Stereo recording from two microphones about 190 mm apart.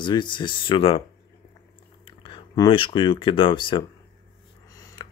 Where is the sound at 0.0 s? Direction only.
25° left (ahead or behind).